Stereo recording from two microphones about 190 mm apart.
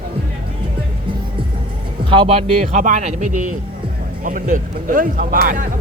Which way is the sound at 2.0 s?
25° right (ahead or behind).